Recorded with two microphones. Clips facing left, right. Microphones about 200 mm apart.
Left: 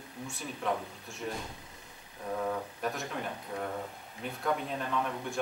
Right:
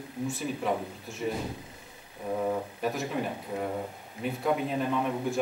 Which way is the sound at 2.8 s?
Centre (ahead or behind).